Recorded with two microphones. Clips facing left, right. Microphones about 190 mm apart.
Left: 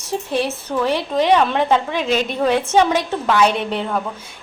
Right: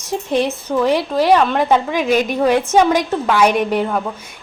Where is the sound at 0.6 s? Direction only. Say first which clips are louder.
Right 4 dB; 10° right (ahead or behind).